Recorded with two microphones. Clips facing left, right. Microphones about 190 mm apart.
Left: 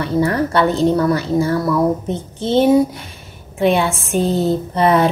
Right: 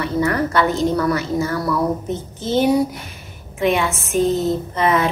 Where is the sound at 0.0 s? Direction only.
30° left (ahead or behind).